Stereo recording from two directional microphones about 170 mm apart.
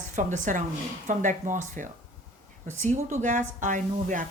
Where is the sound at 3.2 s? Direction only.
45° right (ahead or behind).